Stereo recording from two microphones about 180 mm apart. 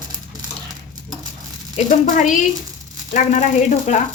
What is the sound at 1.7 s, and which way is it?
A woman's voice, 45° left (ahead or behind).